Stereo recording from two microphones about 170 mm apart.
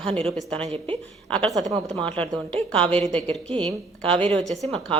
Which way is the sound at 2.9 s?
5° left (ahead or behind).